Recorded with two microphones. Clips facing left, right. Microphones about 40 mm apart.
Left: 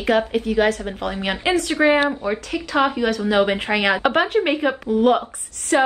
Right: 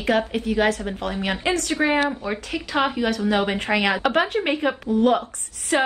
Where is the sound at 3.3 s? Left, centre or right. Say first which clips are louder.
Left 5 dB; centre.